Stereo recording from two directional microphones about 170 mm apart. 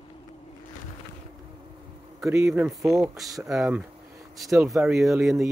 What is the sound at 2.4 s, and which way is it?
Speech, 5° right (ahead or behind).